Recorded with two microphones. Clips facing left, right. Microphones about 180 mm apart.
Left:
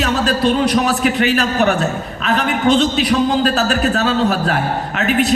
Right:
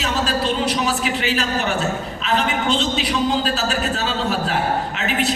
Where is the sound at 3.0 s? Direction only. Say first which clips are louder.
Left 5 dB; 60° left (ahead or behind).